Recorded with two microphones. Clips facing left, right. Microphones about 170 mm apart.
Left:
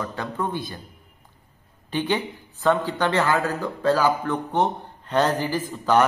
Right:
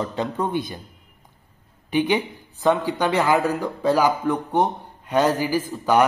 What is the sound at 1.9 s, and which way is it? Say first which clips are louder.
Speech: right 4 dB; 10° right (ahead or behind).